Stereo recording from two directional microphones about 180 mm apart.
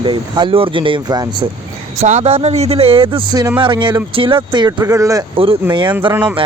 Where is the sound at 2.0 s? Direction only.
35° right (ahead or behind).